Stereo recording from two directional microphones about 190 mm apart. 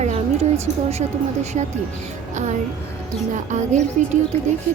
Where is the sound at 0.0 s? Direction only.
35° right (ahead or behind).